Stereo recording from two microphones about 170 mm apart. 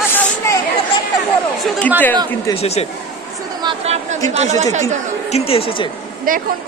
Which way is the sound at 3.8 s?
40° right (ahead or behind).